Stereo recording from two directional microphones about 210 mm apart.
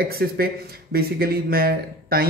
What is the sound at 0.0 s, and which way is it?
Speech, 45° right (ahead or behind).